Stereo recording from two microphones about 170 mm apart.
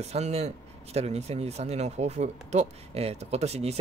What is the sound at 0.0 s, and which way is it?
Speech, 40° right (ahead or behind).